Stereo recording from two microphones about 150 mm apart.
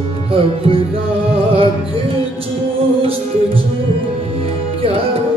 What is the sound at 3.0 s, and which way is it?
Music, 40° right (ahead or behind).